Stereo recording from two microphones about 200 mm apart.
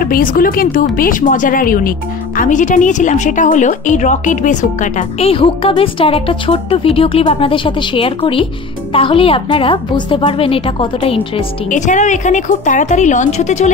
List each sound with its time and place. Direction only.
0.0 s a woman's voice: 45° left (ahead or behind)